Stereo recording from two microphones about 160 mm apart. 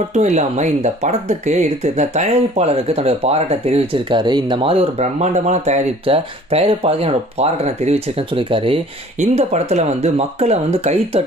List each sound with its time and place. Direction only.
0.1 s speech: 45° right (ahead or behind)